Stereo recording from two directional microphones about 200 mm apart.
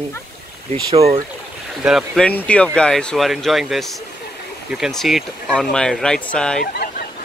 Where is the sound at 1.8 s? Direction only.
Centre (ahead or behind).